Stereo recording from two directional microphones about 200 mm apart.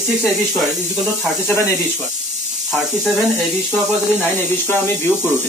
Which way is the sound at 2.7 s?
Centre (ahead or behind).